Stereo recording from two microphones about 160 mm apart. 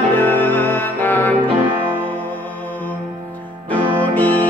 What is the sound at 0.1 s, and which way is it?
Music, 10° left (ahead or behind).